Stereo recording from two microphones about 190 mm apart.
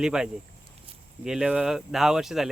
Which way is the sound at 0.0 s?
5° right (ahead or behind).